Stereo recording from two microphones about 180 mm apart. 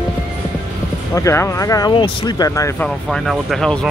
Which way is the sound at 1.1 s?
15° left (ahead or behind).